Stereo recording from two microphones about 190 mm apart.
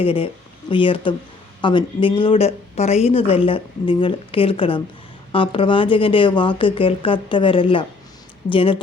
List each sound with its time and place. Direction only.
0.0 s a woman's voice: 30° left (ahead or behind)